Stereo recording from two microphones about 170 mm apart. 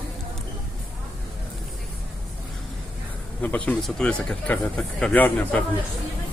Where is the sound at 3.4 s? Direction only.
10° left (ahead or behind).